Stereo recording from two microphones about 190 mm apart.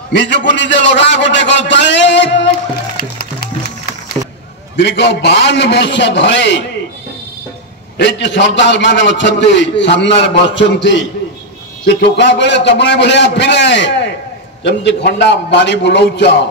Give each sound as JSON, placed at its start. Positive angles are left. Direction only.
{"t": 0.1, "sound": "a man's voice", "side_deg": 65}
{"t": 4.7, "sound": "a man's voice", "side_deg": 65}
{"t": 8.0, "sound": "a man's voice", "side_deg": 70}